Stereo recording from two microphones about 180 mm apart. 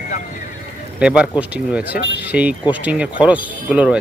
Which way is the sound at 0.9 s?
5° right (ahead or behind).